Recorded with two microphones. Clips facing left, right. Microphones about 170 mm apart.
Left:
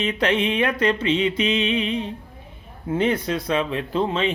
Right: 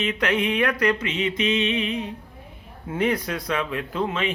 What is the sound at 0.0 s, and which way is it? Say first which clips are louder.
A man's voice: left 2 dB; 30° left (ahead or behind).